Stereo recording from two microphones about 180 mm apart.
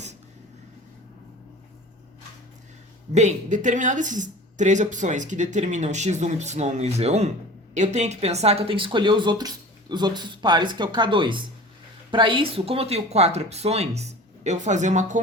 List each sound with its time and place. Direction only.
3.1 s speech: 40° right (ahead or behind)